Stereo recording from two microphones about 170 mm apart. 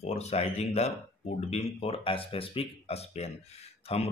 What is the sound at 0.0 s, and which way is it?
Speech, 40° left (ahead or behind).